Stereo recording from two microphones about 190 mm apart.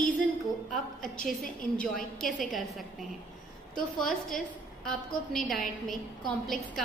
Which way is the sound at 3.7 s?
5° left (ahead or behind).